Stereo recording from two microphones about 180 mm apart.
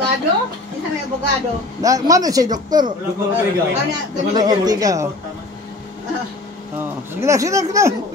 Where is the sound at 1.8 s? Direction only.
20° right (ahead or behind).